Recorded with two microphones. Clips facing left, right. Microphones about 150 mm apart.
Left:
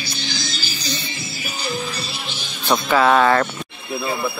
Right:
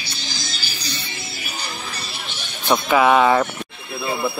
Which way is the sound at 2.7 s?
10° right (ahead or behind).